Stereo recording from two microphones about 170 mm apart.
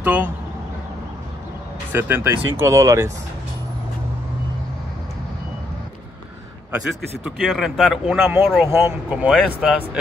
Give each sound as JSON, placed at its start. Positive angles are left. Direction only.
{"t": 0.0, "sound": "speech", "side_deg": -10}
{"t": 1.9, "sound": "speech", "side_deg": -10}
{"t": 7.2, "sound": "speech", "side_deg": 0}